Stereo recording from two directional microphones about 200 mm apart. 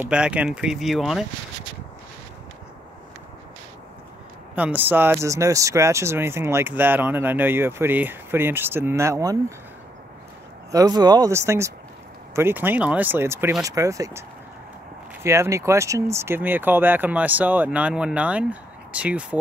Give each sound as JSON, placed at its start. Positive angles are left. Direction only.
{"t": 0.0, "sound": "speech", "side_deg": -5}
{"t": 4.6, "sound": "speech", "side_deg": -10}
{"t": 10.7, "sound": "speech", "side_deg": -20}
{"t": 15.2, "sound": "speech", "side_deg": -15}